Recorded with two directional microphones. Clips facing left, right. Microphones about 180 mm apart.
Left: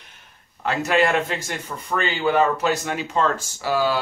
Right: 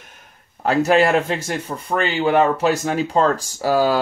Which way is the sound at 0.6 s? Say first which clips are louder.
Right 5 dB; 35° right (ahead or behind).